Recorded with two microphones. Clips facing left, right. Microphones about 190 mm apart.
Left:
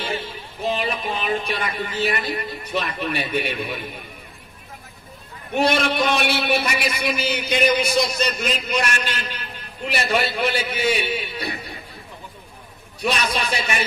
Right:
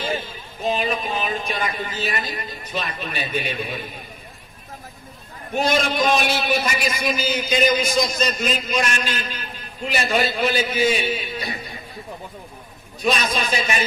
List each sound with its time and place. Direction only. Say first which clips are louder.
0.2 s a man's voice: even; 65° left (ahead or behind)
5.5 s a man's voice: left 1 dB; 65° left (ahead or behind)
13.0 s a man's voice: right 1 dB; 65° left (ahead or behind)